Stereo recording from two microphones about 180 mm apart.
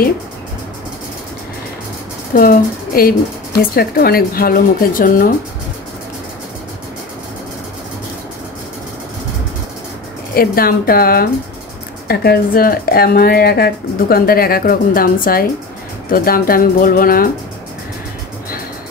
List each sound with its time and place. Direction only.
2.3 s speech: 55° left (ahead or behind)
10.3 s speech: 55° left (ahead or behind)